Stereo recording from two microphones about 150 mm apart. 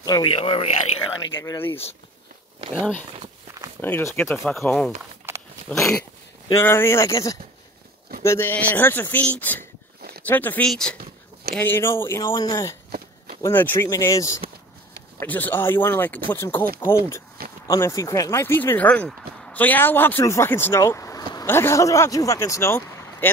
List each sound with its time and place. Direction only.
0.0 s speech: 25° left (ahead or behind)
0.3 s speech: 40° left (ahead or behind)
1.2 s speech: 25° left (ahead or behind)
3.8 s speech: 15° left (ahead or behind)
5.3 s dog: 15° right (ahead or behind)
5.7 s speech: 5° left (ahead or behind)
6.5 s speech: 15° left (ahead or behind)